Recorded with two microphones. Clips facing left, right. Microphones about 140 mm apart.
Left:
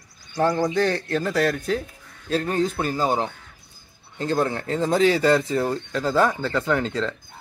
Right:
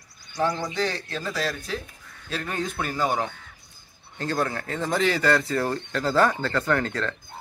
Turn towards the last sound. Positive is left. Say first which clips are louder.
# left 2 dB
turn(degrees=15)  # may be behind; listen again after turning